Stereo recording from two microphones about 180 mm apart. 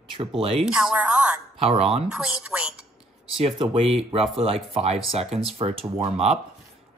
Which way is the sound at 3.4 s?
30° right (ahead or behind).